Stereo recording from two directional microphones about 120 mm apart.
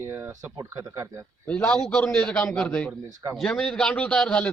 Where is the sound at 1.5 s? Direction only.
10° left (ahead or behind).